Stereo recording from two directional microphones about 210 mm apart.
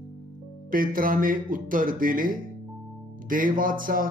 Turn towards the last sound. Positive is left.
turn(degrees=-40)  # may be behind; listen again after turning